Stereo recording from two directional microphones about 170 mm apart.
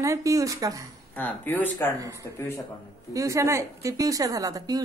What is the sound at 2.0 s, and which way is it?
Speech, 20° right (ahead or behind).